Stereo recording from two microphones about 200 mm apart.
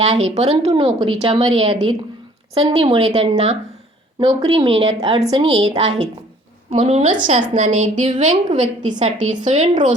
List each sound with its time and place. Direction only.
0.0 s speech: 35° right (ahead or behind)
5.6 s a woman's voice: 30° right (ahead or behind)